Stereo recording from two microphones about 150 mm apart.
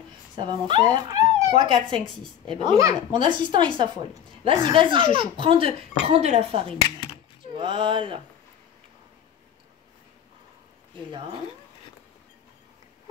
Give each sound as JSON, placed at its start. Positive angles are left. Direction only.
{"t": 0.7, "sound": "speech", "side_deg": -30}
{"t": 2.8, "sound": "speech", "side_deg": -20}
{"t": 3.2, "sound": "a woman's voice", "side_deg": -30}